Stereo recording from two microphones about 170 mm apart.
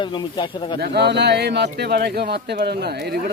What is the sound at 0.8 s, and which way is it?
Speech, 75° right (ahead or behind).